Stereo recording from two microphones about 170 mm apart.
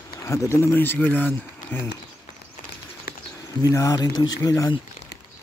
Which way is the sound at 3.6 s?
20° left (ahead or behind).